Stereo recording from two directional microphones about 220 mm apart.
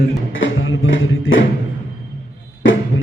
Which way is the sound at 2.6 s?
60° left (ahead or behind).